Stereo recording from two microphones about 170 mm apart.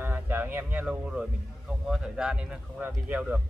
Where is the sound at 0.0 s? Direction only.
10° right (ahead or behind).